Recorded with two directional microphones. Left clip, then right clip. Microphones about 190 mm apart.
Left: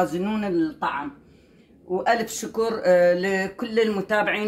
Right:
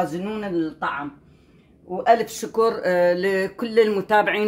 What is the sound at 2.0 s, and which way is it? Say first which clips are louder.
Speech: right 6 dB; 40° right (ahead or behind).